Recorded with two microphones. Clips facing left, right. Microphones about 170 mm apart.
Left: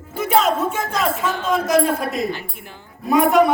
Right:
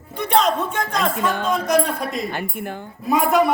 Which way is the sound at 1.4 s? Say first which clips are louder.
Left 4 dB; centre (ahead or behind).